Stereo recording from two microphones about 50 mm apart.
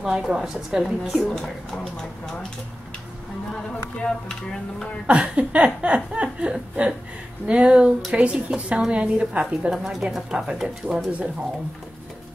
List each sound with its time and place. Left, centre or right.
0.0 s a woman's voice: centre
1.3 s speech: centre
3.5 s speech: centre
5.0 s chuckle: right
9.7 s a woman's voice: centre